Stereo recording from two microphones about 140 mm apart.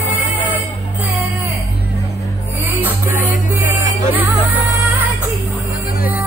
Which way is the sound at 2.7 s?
15° right (ahead or behind).